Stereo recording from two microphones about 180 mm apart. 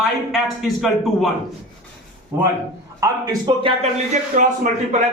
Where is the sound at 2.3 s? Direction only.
15° right (ahead or behind).